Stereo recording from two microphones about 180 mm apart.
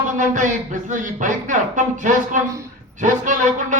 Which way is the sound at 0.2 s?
45° right (ahead or behind).